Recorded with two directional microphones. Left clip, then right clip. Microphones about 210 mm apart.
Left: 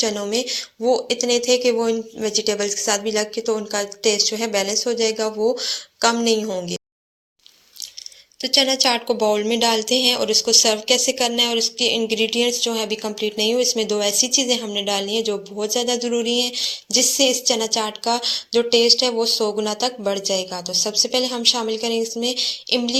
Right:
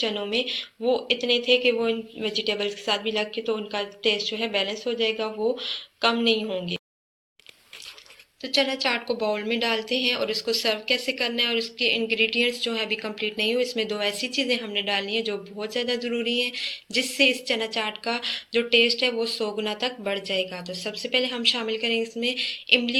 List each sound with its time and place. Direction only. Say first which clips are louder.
0.0 s speech: left 4 dB; 35° left (ahead or behind)
8.4 s speech: left 6 dB; 50° left (ahead or behind)